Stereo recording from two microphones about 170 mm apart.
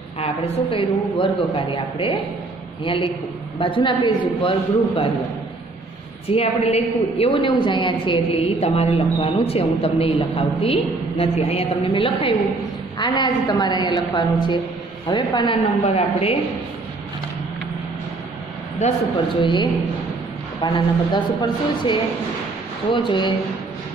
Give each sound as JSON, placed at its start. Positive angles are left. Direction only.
{"t": 0.2, "sound": "a woman's voice", "side_deg": 35}
{"t": 6.2, "sound": "a woman's voice", "side_deg": 35}
{"t": 18.8, "sound": "a woman's voice", "side_deg": 35}